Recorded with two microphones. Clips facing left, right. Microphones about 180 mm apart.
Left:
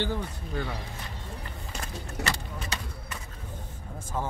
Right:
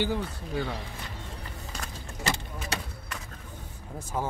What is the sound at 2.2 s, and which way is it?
Vehicle, 70° left (ahead or behind).